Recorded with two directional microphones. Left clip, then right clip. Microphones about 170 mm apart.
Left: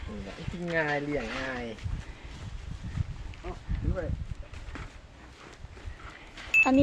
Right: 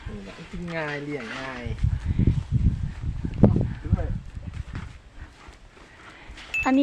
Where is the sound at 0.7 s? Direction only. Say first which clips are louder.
Left 2 dB; 60° right (ahead or behind).